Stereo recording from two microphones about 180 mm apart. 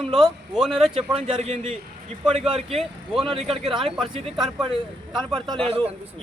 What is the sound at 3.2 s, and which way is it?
Speech, 30° right (ahead or behind).